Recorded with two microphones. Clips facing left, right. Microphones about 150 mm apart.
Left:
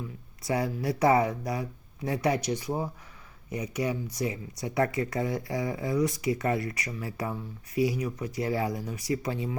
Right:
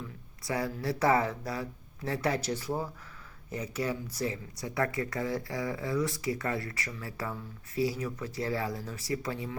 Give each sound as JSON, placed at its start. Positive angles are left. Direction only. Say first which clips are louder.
{"t": 0.4, "sound": "speech", "louder": "left 3 dB", "side_deg": 20}